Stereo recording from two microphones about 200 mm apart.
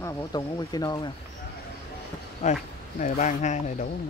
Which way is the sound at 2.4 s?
35° left (ahead or behind).